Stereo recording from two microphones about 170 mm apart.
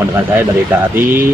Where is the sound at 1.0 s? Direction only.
10° right (ahead or behind).